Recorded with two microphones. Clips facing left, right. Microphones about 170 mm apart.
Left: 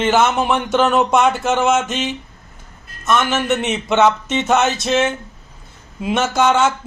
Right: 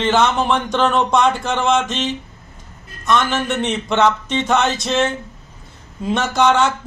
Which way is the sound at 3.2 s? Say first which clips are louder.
Left 1 dB; 20° left (ahead or behind).